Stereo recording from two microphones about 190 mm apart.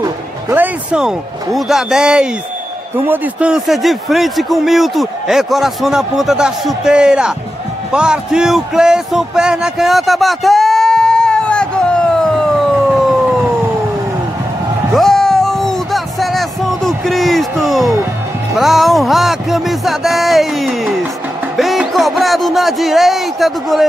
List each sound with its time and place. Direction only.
0.0 s music: 15° right (ahead or behind)
0.9 s a man's voice: centre (ahead or behind)
7.9 s a sound: 5° right (ahead or behind)
15.0 s music: centre (ahead or behind)
18.6 s a man's voice: centre (ahead or behind)